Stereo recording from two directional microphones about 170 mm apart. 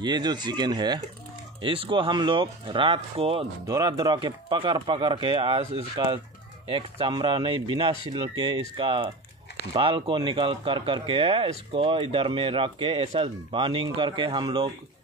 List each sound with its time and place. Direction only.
0.0 s speech: 25° right (ahead or behind)
3.6 s speech: 20° right (ahead or behind)